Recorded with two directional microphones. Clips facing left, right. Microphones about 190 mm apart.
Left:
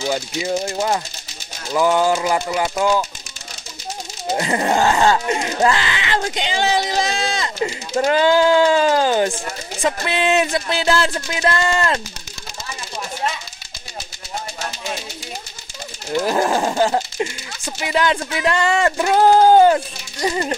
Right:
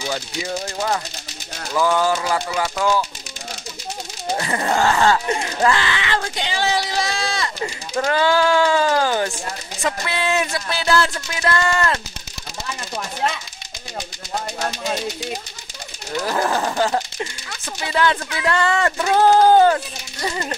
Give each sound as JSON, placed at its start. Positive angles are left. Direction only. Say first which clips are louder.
{"t": 0.7, "sound": "speech", "louder": "left 2 dB", "side_deg": 25}
{"t": 4.4, "sound": "speech", "louder": "left 3 dB", "side_deg": 20}
{"t": 16.2, "sound": "speech", "louder": "left 3 dB", "side_deg": 20}